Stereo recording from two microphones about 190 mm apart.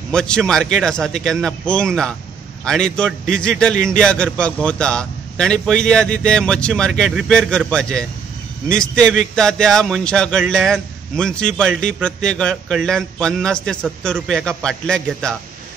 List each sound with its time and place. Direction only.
0.1 s a man's voice: 5° left (ahead or behind)